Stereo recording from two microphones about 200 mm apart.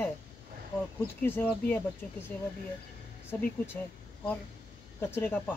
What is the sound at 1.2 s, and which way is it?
Speech, 10° left (ahead or behind).